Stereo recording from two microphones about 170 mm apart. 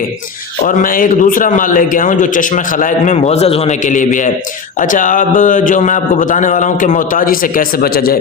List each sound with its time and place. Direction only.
0.6 s a man's voice: 55° left (ahead or behind)